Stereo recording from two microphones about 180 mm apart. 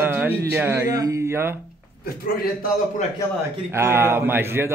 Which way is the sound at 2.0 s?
55° left (ahead or behind).